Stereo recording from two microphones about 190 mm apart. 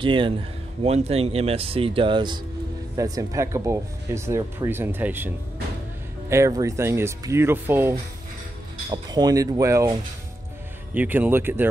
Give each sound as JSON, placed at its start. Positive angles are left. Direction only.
{"t": 0.0, "sound": "speech", "side_deg": -25}
{"t": 8.9, "sound": "speech", "side_deg": -20}
{"t": 11.0, "sound": "speech", "side_deg": -10}